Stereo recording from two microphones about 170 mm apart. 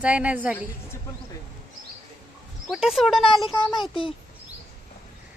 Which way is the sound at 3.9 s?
30° left (ahead or behind).